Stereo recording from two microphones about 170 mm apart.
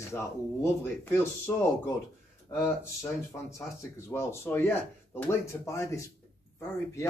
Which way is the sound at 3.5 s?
15° left (ahead or behind).